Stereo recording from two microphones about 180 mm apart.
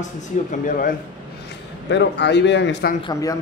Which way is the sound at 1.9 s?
75° left (ahead or behind).